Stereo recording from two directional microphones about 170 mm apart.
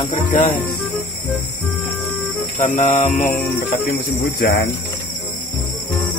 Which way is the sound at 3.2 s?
55° left (ahead or behind).